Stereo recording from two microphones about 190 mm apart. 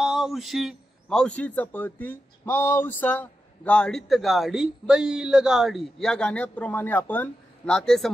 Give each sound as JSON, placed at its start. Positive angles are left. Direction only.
{"t": 0.0, "sound": "a man's voice", "side_deg": 0}